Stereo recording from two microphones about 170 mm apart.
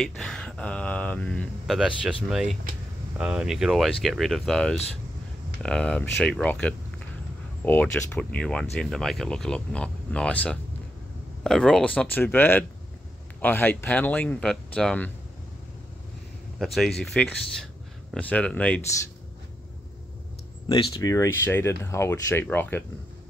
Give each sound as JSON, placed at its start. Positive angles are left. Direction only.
{"t": 0.0, "sound": "speech", "side_deg": 5}
{"t": 1.8, "sound": "speech", "side_deg": -5}
{"t": 16.5, "sound": "speech", "side_deg": 0}
{"t": 20.6, "sound": "speech", "side_deg": 20}